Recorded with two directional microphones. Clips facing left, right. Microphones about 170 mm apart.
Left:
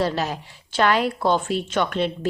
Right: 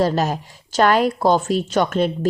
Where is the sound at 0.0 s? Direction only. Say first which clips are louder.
Right 5 dB; 45° right (ahead or behind).